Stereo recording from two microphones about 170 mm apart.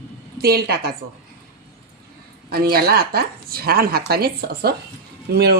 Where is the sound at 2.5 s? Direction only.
65° right (ahead or behind).